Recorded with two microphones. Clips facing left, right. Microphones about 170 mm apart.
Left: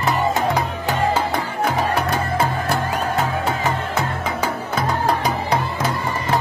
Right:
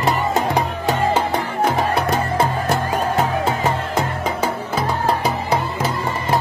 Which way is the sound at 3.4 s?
30° right (ahead or behind).